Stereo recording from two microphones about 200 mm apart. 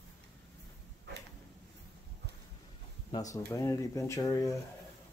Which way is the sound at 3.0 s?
20° left (ahead or behind).